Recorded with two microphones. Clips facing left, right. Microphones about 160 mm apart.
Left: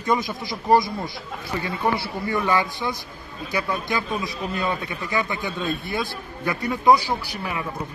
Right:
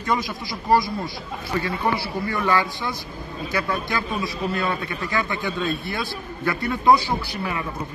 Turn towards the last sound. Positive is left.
turn(degrees=10)  # may be behind; listen again after turning